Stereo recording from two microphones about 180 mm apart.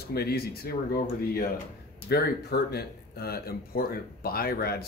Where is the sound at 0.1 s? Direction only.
60° left (ahead or behind).